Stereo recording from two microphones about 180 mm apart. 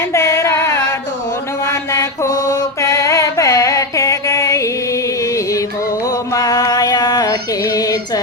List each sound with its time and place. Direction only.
0.1 s a sound: 15° left (ahead or behind)
1.6 s mantra: 15° left (ahead or behind)
6.3 s female singing: 20° left (ahead or behind)